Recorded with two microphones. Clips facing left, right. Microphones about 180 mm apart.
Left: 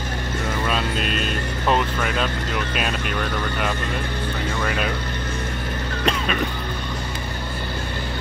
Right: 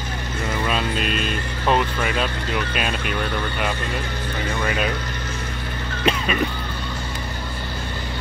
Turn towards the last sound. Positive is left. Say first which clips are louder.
# right 1 dB
turn(degrees=0)  # may be behind; listen again after turning